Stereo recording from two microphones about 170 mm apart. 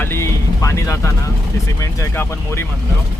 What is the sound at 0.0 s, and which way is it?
Vehicle, 15° left (ahead or behind).